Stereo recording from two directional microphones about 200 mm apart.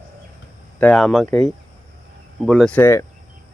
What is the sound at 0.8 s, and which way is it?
Speech, 5° left (ahead or behind).